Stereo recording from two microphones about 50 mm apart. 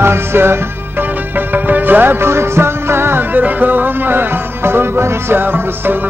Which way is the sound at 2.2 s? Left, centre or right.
Right.